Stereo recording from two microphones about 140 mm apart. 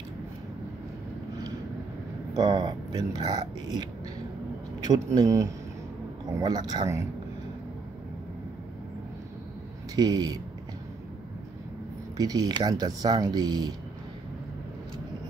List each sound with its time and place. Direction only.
2.3 s speech: 30° right (ahead or behind)
4.8 s speech: 25° right (ahead or behind)
9.9 s speech: 30° right (ahead or behind)
12.2 s speech: 30° right (ahead or behind)